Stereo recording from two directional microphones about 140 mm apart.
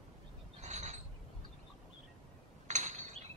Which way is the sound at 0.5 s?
55° right (ahead or behind).